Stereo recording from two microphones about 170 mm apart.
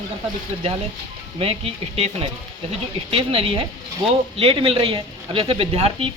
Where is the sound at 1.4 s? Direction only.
35° right (ahead or behind).